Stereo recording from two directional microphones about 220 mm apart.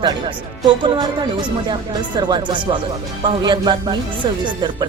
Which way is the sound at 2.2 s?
20° right (ahead or behind).